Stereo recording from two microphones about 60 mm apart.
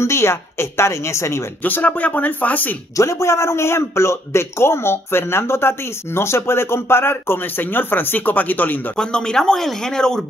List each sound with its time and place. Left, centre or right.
0.0 s a man's voice: left
1.6 s speech: left
3.0 s a man's voice: left
8.9 s speech: centre